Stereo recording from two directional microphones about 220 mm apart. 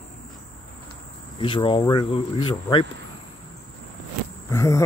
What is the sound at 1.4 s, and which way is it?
Speech, 25° left (ahead or behind).